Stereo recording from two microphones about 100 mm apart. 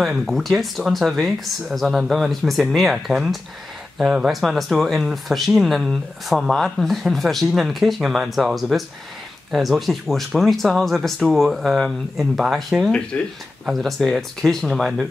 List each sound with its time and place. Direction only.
0.0 s speech: centre (ahead or behind)
13.1 s speech: 10° left (ahead or behind)
13.7 s speech: centre (ahead or behind)